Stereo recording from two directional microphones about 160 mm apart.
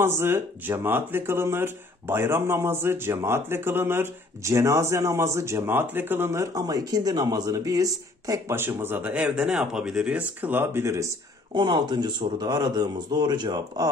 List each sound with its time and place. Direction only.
0.0 s speech: 15° right (ahead or behind)
11.5 s speech: 30° right (ahead or behind)